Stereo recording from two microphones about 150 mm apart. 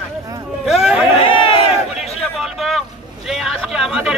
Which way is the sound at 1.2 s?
35° left (ahead or behind).